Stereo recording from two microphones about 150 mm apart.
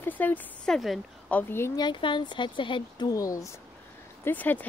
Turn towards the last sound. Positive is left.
turn(degrees=10)  # may be behind; listen again after turning